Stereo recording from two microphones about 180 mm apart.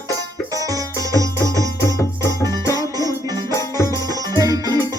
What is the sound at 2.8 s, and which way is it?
Music, 20° right (ahead or behind).